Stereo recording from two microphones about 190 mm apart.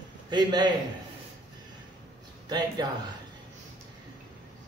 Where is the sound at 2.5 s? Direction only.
20° right (ahead or behind).